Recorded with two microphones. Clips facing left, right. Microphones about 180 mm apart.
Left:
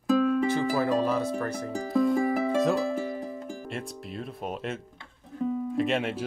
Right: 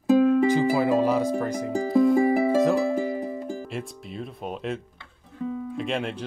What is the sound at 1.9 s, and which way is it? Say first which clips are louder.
Music: right 5 dB; centre (ahead or behind).